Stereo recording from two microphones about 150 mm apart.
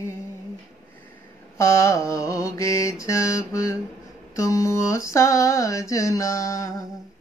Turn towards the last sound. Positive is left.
turn(degrees=20)  # may be behind; listen again after turning